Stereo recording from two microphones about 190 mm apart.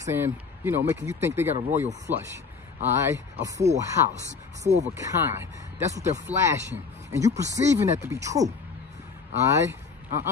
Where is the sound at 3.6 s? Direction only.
35° right (ahead or behind).